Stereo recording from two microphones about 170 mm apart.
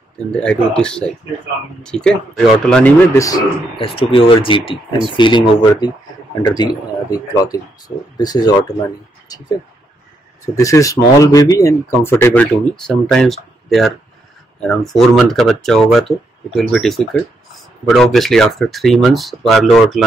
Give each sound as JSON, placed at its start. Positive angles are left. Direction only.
{"t": 0.3, "sound": "speech", "side_deg": 5}
{"t": 3.7, "sound": "speech", "side_deg": 30}